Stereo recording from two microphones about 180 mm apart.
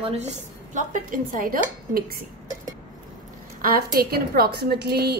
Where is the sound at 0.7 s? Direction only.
45° right (ahead or behind).